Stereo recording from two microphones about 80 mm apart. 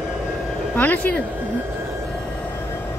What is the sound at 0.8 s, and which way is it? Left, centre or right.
Speech, left.